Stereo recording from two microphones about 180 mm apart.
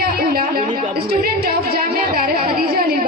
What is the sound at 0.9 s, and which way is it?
Speech, 60° right (ahead or behind).